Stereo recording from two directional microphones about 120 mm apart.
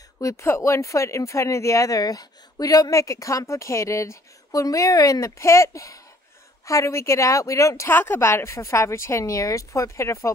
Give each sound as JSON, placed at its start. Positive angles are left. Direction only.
{"t": 0.2, "sound": "speech", "side_deg": 25}